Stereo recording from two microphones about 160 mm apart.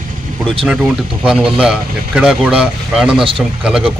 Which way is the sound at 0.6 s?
5° right (ahead or behind).